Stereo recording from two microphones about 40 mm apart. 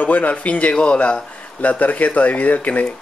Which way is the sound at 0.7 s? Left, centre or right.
Left.